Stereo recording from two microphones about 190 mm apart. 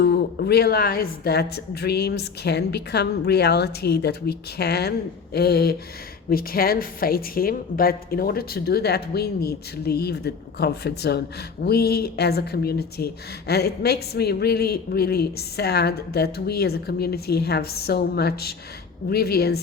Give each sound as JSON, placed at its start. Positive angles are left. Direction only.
{"t": 0.0, "sound": "speech", "side_deg": 60}